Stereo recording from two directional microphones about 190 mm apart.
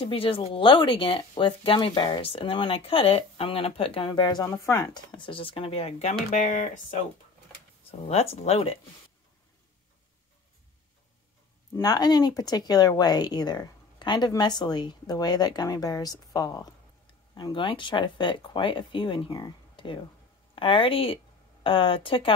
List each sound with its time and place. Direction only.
0.0 s speech: 30° left (ahead or behind)
5.1 s speech: 25° left (ahead or behind)
7.9 s speech: 30° left (ahead or behind)
11.7 s speech: 20° left (ahead or behind)